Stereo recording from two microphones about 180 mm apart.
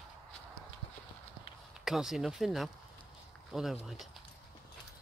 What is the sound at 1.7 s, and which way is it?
Speech, centre (ahead or behind).